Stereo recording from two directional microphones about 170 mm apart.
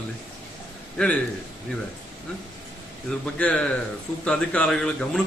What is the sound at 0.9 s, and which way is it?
Speech, 5° left (ahead or behind).